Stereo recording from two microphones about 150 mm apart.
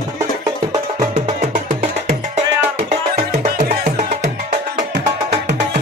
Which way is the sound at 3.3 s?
60° right (ahead or behind).